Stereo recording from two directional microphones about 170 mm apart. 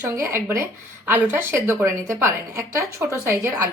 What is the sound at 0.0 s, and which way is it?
A woman's voice, 15° right (ahead or behind).